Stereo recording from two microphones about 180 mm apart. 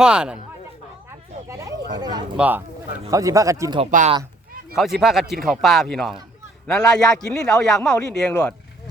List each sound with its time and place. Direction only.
0.0 s speech: 5° right (ahead or behind)
1.5 s a sound: 15° right (ahead or behind)
2.3 s speech: 10° right (ahead or behind)
4.7 s speech: centre (ahead or behind)